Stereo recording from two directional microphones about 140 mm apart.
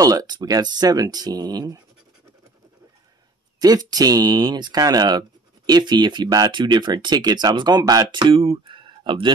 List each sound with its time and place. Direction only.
0.0 s speech: 25° right (ahead or behind)
3.5 s speech: 30° right (ahead or behind)